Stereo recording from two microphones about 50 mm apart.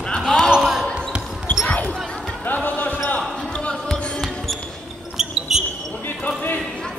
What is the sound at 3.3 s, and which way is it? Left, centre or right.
Basketball bounce, centre.